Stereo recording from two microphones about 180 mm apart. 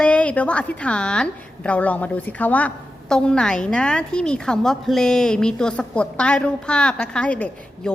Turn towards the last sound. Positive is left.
turn(degrees=5)  # may be behind; listen again after turning